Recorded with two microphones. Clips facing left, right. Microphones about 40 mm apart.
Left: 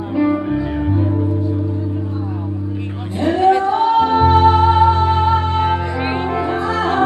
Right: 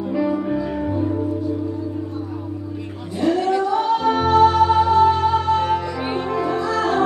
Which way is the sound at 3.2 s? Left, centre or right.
Left.